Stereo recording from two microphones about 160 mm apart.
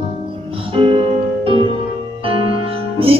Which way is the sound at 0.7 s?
35° right (ahead or behind).